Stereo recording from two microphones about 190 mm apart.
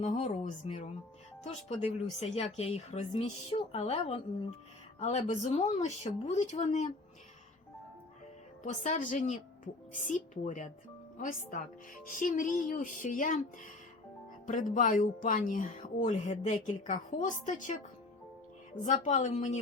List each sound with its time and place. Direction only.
0.0 s speech: 35° left (ahead or behind)
8.6 s speech: 40° left (ahead or behind)
14.4 s speech: 40° left (ahead or behind)
18.9 s speech: 40° left (ahead or behind)